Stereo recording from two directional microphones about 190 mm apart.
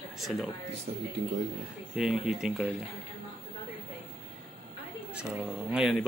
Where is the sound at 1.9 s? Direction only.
5° right (ahead or behind).